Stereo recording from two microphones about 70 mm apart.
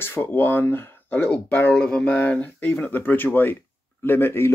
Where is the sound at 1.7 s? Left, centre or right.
Centre; by 4.5 s left.